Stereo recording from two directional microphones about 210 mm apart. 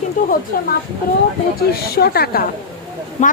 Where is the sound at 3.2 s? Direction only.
35° left (ahead or behind).